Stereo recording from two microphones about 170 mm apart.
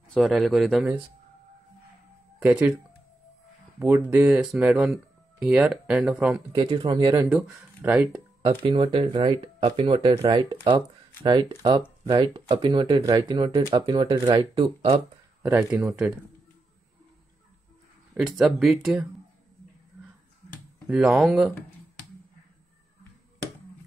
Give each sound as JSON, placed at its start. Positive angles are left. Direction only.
{"t": 0.1, "sound": "speech", "side_deg": 0}
{"t": 2.4, "sound": "speech", "side_deg": -10}
{"t": 3.8, "sound": "speech", "side_deg": -15}
{"t": 6.5, "sound": "speech", "side_deg": -25}
{"t": 7.2, "sound": "speech", "side_deg": -10}
{"t": 8.5, "sound": "speech", "side_deg": -30}
{"t": 10.1, "sound": "speech", "side_deg": -25}
{"t": 15.4, "sound": "speech", "side_deg": -10}
{"t": 18.1, "sound": "speech", "side_deg": 0}
{"t": 20.9, "sound": "speech", "side_deg": -5}